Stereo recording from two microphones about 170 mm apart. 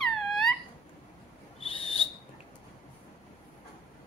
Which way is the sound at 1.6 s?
35° left (ahead or behind).